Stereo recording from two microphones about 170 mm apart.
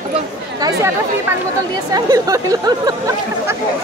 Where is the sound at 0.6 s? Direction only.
20° right (ahead or behind).